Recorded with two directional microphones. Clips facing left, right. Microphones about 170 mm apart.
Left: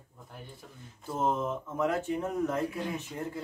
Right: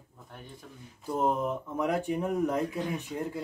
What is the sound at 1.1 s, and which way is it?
Speech, 15° right (ahead or behind).